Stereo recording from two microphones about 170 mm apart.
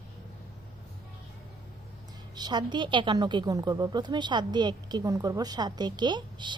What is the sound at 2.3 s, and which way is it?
A woman's voice, 25° right (ahead or behind).